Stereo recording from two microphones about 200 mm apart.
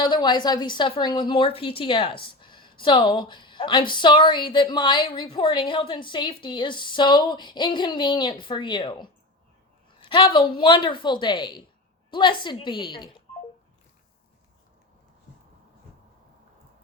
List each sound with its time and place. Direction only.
0.0 s a woman's voice: 20° left (ahead or behind)